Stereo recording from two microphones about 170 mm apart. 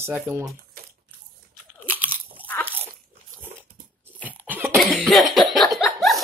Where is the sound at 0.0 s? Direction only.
15° right (ahead or behind).